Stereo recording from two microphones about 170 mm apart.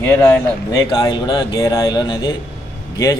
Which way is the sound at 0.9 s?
25° left (ahead or behind).